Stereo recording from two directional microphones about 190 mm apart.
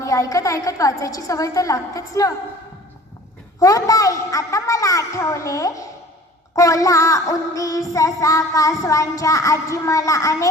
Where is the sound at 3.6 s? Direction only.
20° left (ahead or behind).